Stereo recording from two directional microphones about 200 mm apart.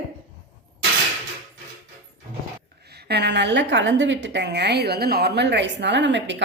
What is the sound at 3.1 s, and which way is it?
A woman's voice, 55° right (ahead or behind).